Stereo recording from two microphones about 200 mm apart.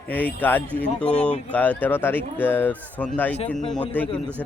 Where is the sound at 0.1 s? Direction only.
10° left (ahead or behind).